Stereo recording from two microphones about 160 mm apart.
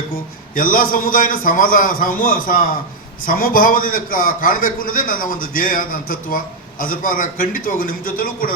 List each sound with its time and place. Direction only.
0.5 s a man's voice: 60° left (ahead or behind)